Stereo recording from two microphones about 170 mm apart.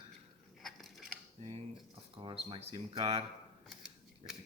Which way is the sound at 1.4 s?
35° right (ahead or behind).